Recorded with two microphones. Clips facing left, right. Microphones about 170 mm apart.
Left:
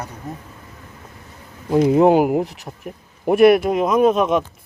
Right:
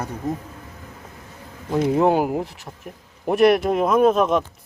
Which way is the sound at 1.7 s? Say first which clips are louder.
Left 5 dB; 20° left (ahead or behind).